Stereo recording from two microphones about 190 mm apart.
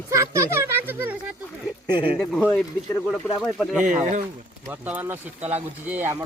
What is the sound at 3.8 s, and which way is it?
Speech, 40° right (ahead or behind).